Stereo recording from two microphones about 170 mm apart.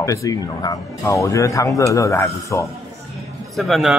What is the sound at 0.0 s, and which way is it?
Speech, 20° left (ahead or behind).